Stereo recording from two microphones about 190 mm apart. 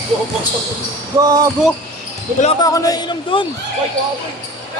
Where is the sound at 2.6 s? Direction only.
20° left (ahead or behind).